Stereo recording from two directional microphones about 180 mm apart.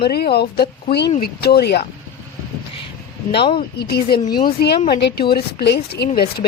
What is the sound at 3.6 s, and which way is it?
A woman's voice, 60° left (ahead or behind).